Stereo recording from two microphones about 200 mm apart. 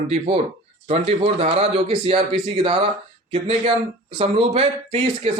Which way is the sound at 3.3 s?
30° right (ahead or behind).